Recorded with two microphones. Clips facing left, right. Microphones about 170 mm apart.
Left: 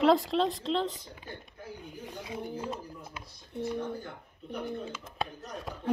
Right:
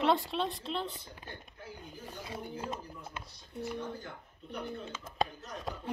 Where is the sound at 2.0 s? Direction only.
15° left (ahead or behind).